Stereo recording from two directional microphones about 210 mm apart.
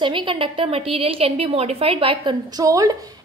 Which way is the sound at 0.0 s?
25° right (ahead or behind).